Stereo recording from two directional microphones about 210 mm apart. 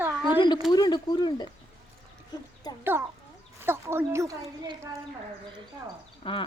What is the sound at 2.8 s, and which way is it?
Speech, 10° right (ahead or behind).